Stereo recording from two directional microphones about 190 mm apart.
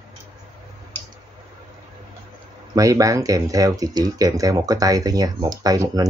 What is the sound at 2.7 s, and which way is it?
Speech, 20° right (ahead or behind).